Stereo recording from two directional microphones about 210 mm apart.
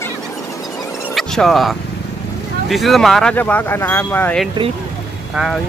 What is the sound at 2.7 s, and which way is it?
Speech, centre (ahead or behind).